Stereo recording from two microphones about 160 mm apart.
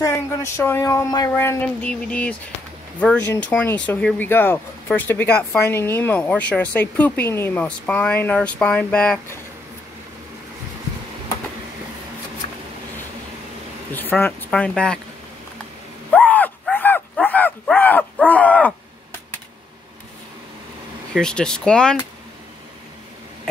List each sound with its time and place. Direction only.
0.0 s speech: 20° left (ahead or behind)
13.9 s speech: 10° left (ahead or behind)
16.1 s dog: 10° left (ahead or behind)
21.1 s speech: 5° left (ahead or behind)